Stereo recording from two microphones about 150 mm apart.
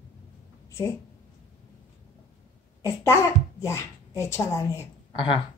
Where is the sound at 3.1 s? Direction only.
20° left (ahead or behind).